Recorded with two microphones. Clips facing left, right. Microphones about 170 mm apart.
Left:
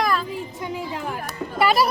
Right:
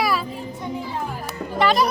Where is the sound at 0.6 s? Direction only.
90° left.